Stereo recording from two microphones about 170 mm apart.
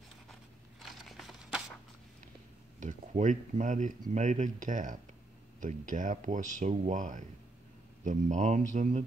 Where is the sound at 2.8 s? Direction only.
45° right (ahead or behind).